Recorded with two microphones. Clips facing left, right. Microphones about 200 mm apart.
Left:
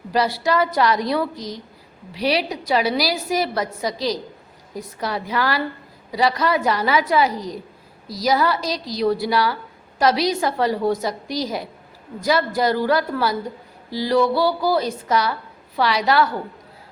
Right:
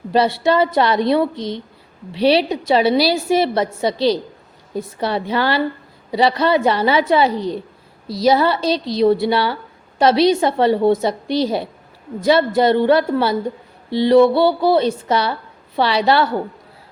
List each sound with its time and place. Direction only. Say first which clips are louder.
0.1 s a woman's voice: right 4 dB; 25° right (ahead or behind)